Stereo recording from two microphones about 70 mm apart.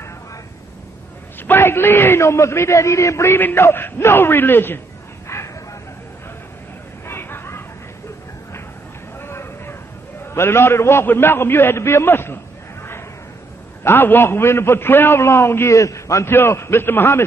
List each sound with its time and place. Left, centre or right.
1.5 s a man's voice: left
3.3 s a man's voice: left
5.3 s bow-wow: left
7.1 s vehicle: left
9.2 s a sound: left
10.2 s a man's voice: left
13.8 s a man's voice: left
16.3 s a man's voice: left